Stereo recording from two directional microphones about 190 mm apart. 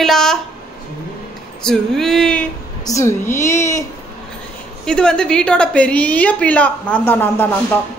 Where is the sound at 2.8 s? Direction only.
15° left (ahead or behind).